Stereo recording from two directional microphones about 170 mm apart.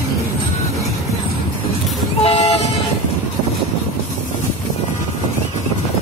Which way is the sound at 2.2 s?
35° left (ahead or behind).